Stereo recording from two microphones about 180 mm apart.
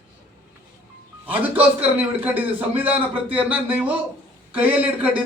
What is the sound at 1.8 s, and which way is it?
A man's voice, 10° right (ahead or behind).